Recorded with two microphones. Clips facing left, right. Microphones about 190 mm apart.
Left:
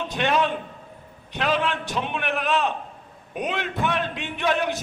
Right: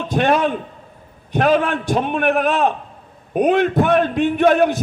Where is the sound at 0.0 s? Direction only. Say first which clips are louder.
Right 6 dB; 50° right (ahead or behind).